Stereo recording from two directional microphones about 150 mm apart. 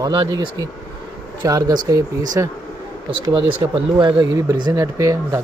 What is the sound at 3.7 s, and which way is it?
Speech, 35° right (ahead or behind).